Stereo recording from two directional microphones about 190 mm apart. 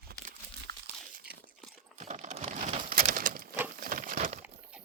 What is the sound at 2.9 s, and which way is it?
Pigeon, 50° right (ahead or behind).